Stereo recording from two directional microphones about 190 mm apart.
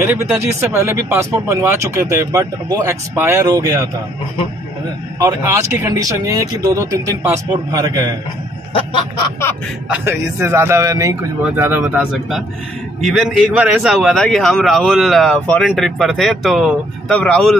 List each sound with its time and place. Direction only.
0.0 s speech: 10° right (ahead or behind)
5.2 s speech: 15° right (ahead or behind)
9.8 s a man's voice: 10° right (ahead or behind); by 17.6 s 5° left (ahead or behind)